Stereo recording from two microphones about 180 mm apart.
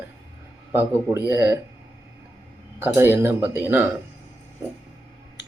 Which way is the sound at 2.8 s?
10° right (ahead or behind).